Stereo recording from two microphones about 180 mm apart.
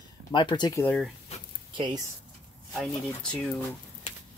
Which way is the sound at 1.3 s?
35° left (ahead or behind).